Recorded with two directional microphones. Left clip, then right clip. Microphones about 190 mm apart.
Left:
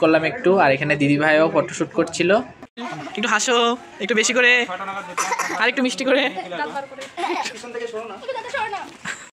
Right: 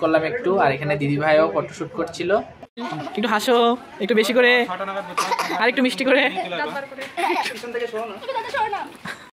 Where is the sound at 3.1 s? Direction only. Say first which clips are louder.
Even; 10° right (ahead or behind).